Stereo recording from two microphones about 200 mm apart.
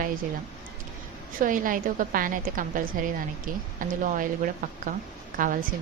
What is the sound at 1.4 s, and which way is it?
A woman's voice, 40° right (ahead or behind).